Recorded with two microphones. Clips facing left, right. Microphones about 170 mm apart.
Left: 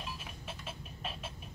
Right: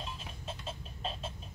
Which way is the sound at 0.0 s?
30° right (ahead or behind).